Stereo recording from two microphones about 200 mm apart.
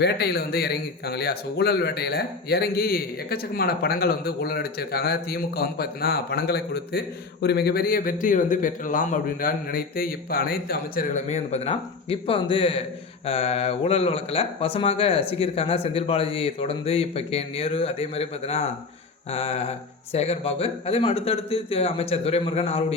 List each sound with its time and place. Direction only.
0.0 s a man's voice: 55° left (ahead or behind); by 23.0 s 30° left (ahead or behind)